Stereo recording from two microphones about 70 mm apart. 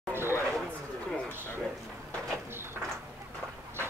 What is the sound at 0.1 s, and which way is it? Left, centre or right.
Chatter, right.